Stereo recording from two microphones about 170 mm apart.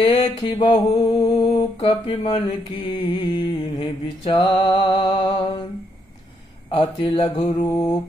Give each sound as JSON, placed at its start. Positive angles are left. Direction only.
{"t": 0.0, "sound": "mantra", "side_deg": 25}
{"t": 6.7, "sound": "mantra", "side_deg": 25}